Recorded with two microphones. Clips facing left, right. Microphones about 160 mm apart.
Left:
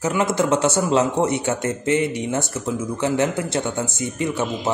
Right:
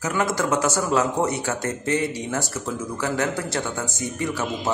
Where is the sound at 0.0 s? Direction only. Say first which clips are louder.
Left 3 dB; 25° left (ahead or behind).